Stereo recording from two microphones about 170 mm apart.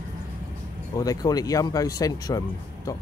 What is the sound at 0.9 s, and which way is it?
Speech, 20° left (ahead or behind).